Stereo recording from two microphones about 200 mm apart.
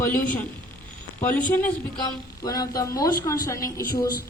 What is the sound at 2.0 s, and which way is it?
A woman's voice, 20° left (ahead or behind).